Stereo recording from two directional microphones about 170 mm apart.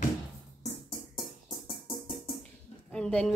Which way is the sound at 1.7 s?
30° left (ahead or behind).